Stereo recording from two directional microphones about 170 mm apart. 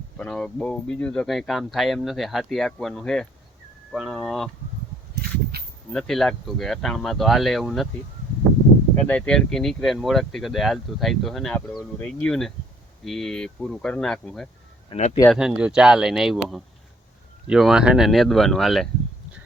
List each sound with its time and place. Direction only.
0.2 s speech: 5° left (ahead or behind)
5.1 s a sound: 70° right (ahead or behind)
5.9 s speech: centre (ahead or behind)
9.0 s speech: 5° left (ahead or behind)
14.9 s speech: 30° left (ahead or behind)
15.3 s speech: 5° right (ahead or behind)